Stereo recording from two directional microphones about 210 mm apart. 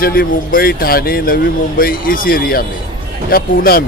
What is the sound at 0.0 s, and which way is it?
A man's voice, 45° left (ahead or behind).